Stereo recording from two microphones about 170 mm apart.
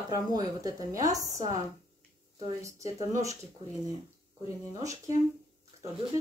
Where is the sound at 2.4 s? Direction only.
20° right (ahead or behind).